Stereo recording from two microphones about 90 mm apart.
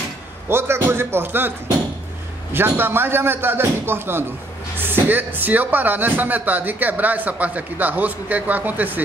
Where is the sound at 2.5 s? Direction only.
25° right (ahead or behind).